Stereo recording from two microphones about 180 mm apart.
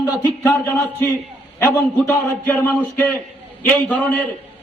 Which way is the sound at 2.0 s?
10° left (ahead or behind).